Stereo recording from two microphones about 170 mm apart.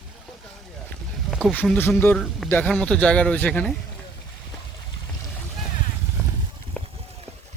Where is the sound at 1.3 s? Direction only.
5° right (ahead or behind).